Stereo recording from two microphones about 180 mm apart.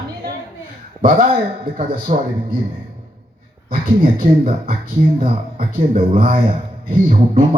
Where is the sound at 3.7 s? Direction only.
50° right (ahead or behind).